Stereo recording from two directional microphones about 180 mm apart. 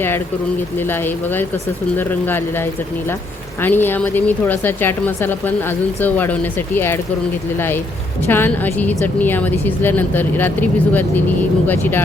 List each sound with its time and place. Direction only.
0.9 s a woman's voice: 10° left (ahead or behind)
8.3 s a woman's voice: 10° left (ahead or behind)